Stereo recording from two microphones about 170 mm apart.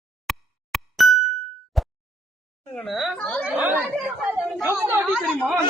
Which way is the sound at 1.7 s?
Centre (ahead or behind).